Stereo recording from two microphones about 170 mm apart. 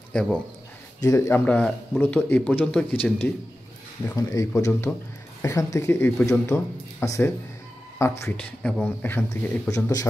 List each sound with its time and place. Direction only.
0.1 s speech: 5° left (ahead or behind)
1.0 s speech: 20° left (ahead or behind)
4.1 s speech: 20° left (ahead or behind)